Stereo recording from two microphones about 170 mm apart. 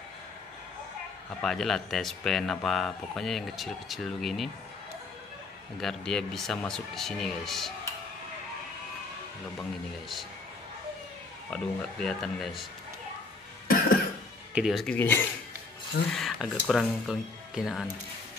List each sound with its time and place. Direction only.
1.4 s speech: 5° left (ahead or behind)
5.8 s speech: centre (ahead or behind)
9.6 s speech: centre (ahead or behind)
11.5 s speech: 5° left (ahead or behind)
13.7 s cough: 60° left (ahead or behind)
14.5 s speech: 5° right (ahead or behind)
15.0 s speech: 15° left (ahead or behind)
16.1 s speech: centre (ahead or behind)